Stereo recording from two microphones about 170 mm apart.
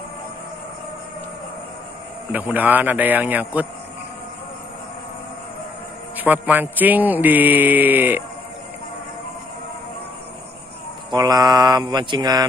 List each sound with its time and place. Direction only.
2.3 s a man's voice: 10° right (ahead or behind)
6.1 s a man's voice: 10° right (ahead or behind)
11.1 s mantra: 25° right (ahead or behind)